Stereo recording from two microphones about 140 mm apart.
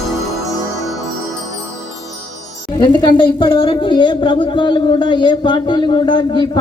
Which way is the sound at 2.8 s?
30° left (ahead or behind).